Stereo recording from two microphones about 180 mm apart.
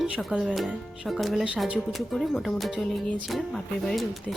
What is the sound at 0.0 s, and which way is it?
Speech, centre (ahead or behind).